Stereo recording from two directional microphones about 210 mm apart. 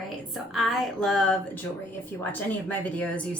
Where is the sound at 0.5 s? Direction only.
Centre (ahead or behind).